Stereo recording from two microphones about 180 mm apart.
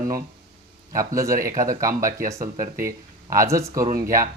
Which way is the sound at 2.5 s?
50° right (ahead or behind).